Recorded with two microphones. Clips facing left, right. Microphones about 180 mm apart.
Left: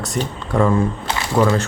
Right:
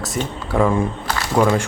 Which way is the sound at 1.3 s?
10° right (ahead or behind).